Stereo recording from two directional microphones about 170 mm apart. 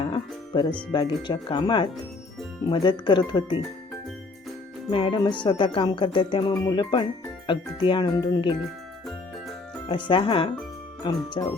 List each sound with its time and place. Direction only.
0.0 s music: 30° left (ahead or behind)
0.9 s speech: 30° left (ahead or behind)
4.9 s speech: 30° left (ahead or behind)
9.9 s speech: 30° left (ahead or behind)